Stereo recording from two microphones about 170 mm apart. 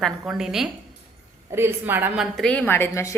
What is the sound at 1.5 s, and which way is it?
Speech, 15° right (ahead or behind).